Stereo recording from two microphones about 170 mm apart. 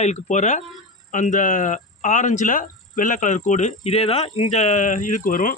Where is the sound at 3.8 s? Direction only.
35° left (ahead or behind).